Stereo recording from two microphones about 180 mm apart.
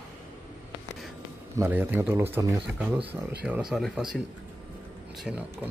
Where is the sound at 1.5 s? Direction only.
15° right (ahead or behind).